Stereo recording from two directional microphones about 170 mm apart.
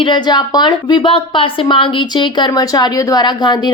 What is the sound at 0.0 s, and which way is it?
A woman's voice, 25° left (ahead or behind).